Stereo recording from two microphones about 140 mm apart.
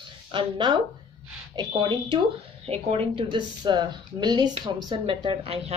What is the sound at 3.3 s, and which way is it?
A woman's voice, 30° right (ahead or behind).